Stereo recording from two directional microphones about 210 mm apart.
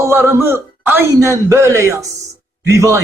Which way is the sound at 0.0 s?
10° right (ahead or behind).